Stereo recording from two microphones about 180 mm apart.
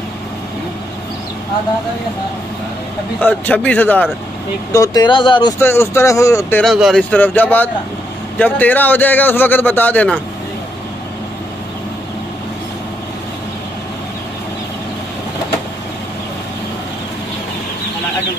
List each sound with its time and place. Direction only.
3.2 s a man's voice: 10° left (ahead or behind)
4.7 s speech: 20° left (ahead or behind)
5.6 s a man's voice: 15° left (ahead or behind)
6.6 s a man's voice: centre (ahead or behind)